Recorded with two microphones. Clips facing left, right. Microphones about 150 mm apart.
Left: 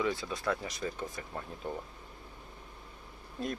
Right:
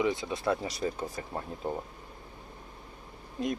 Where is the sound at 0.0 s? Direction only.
20° right (ahead or behind).